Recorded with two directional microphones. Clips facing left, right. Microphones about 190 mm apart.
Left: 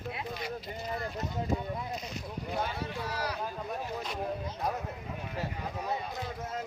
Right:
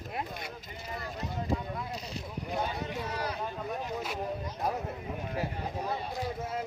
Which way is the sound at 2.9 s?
20° right (ahead or behind).